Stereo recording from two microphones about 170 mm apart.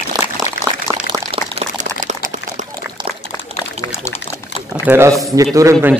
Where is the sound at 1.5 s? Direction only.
45° right (ahead or behind).